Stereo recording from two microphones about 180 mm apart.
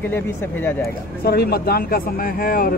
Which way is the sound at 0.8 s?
60° left (ahead or behind).